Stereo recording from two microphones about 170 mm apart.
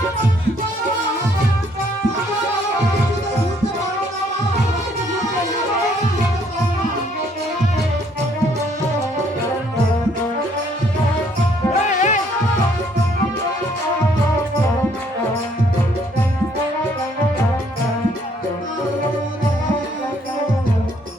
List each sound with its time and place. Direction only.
11.9 s music: 45° left (ahead or behind)